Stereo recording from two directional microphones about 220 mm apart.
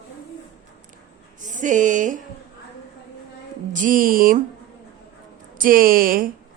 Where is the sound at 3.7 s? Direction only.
35° right (ahead or behind).